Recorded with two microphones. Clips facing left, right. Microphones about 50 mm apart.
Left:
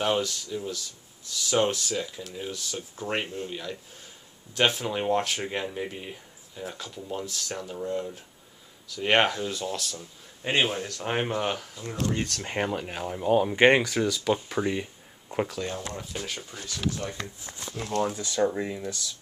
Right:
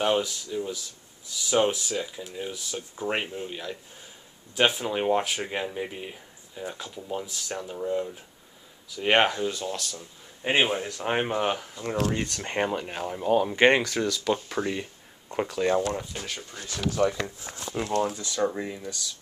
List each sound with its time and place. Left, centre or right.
0.0 s speech: centre
10.4 s speech: centre
12.4 s speech: centre
17.0 s speech: right
17.8 s speech: centre